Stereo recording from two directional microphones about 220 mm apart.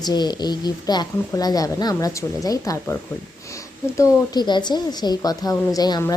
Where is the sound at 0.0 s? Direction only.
20° left (ahead or behind).